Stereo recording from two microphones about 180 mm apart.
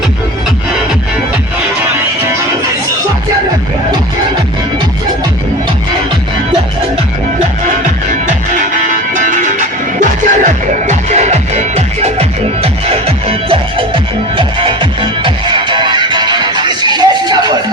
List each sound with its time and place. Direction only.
8.5 s music: 50° right (ahead or behind); by 17.6 s 25° right (ahead or behind)